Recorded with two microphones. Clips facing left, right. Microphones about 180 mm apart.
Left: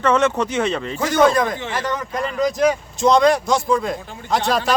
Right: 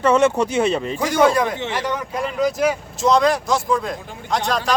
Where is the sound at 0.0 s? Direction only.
10° right (ahead or behind).